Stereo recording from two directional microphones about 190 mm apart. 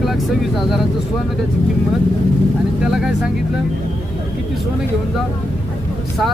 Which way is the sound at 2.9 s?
5° right (ahead or behind).